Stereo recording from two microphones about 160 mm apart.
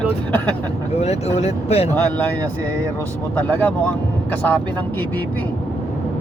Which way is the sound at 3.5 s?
10° left (ahead or behind).